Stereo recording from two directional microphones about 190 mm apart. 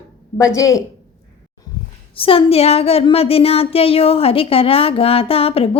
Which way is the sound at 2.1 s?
30° left (ahead or behind).